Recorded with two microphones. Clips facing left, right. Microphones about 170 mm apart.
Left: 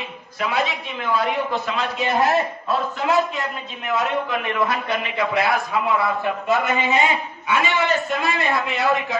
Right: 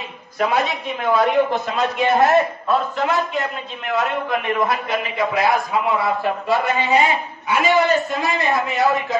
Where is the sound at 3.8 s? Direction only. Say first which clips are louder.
Right 1 dB; 45° right (ahead or behind).